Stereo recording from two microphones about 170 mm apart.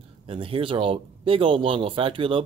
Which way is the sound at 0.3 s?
30° right (ahead or behind).